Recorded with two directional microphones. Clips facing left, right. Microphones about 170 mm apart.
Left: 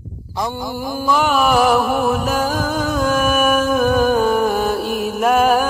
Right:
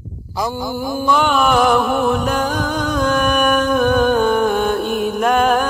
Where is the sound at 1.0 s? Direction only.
5° left (ahead or behind).